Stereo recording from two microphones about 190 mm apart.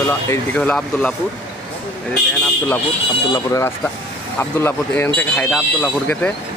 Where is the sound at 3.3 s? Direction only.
15° left (ahead or behind).